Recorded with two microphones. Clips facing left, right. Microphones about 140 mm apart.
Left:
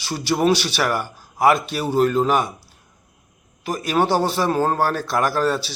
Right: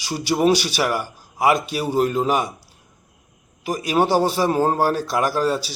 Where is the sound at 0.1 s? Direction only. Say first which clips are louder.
Right 1 dB; 10° right (ahead or behind).